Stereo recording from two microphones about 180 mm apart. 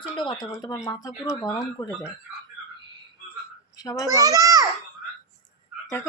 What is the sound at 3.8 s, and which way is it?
Speech, 20° left (ahead or behind).